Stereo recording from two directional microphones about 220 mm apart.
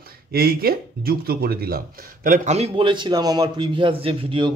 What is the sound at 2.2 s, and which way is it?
A man's voice, 35° right (ahead or behind).